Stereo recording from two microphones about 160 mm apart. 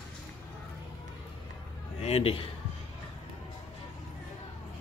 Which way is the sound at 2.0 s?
40° left (ahead or behind).